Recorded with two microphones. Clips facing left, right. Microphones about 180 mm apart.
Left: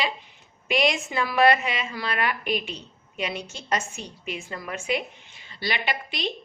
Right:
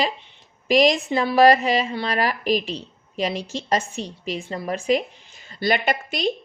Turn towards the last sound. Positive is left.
turn(degrees=-45)  # may be behind; listen again after turning